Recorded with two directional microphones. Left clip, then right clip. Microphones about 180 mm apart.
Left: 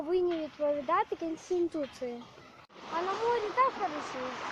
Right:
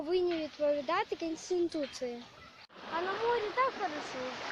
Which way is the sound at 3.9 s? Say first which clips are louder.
Left 2 dB; 45° right (ahead or behind).